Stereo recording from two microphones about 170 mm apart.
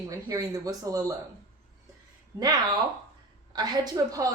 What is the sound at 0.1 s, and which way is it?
A woman's voice, 20° right (ahead or behind).